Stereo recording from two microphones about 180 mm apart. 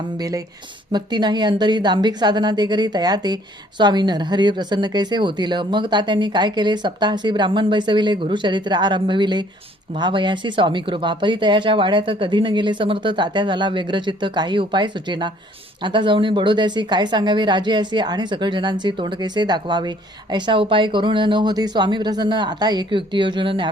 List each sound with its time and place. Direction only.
0.2 s speech: 20° right (ahead or behind)